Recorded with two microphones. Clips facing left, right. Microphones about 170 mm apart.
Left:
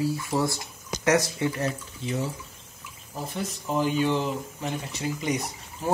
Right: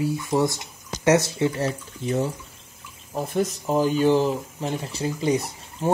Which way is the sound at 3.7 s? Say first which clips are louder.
Right 4 dB; 40° right (ahead or behind).